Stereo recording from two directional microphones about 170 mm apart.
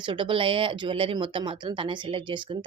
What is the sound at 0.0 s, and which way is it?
Speech, 30° right (ahead or behind).